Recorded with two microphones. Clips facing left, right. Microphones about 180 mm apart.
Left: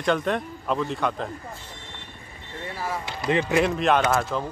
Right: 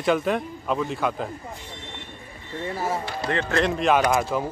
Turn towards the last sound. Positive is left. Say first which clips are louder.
# right 2 dB
turn(degrees=-10)  # may be behind; listen again after turning